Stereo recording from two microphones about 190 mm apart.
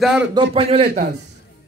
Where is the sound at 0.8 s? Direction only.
55° right (ahead or behind).